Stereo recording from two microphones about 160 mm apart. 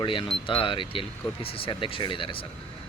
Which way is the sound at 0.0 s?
30° left (ahead or behind).